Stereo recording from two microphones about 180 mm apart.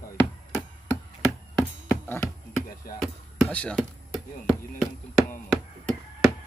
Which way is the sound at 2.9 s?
50° left (ahead or behind).